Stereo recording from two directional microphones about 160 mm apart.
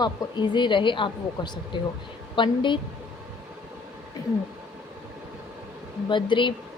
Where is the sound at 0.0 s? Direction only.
30° left (ahead or behind).